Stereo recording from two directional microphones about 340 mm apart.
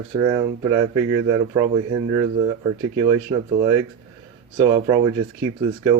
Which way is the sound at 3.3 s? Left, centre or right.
Centre.